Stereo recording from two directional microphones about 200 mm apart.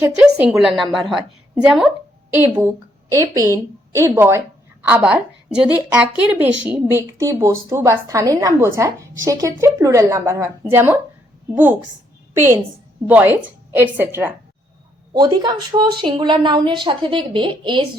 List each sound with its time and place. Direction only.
0.0 s a woman's voice: 5° right (ahead or behind)
2.6 s a woman's voice: 15° right (ahead or behind)
13.1 s a woman's voice: 10° right (ahead or behind)